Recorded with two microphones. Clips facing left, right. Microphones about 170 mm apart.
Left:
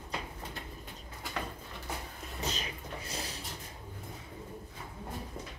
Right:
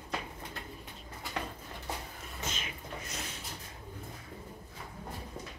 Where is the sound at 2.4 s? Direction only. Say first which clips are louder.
Left 3 dB; 35° left (ahead or behind).